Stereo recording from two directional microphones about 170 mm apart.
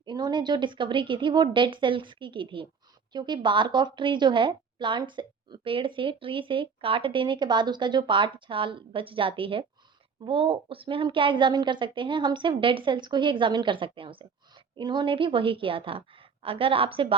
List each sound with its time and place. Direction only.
0.0 s a woman's voice: 25° right (ahead or behind)